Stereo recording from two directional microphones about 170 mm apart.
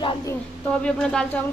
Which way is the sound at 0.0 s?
20° left (ahead or behind).